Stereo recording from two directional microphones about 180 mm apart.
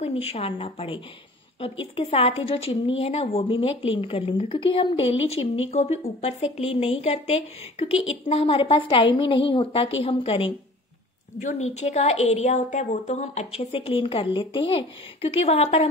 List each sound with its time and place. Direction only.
0.0 s a woman's voice: 30° left (ahead or behind)